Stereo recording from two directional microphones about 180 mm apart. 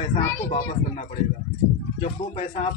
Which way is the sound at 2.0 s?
40° left (ahead or behind).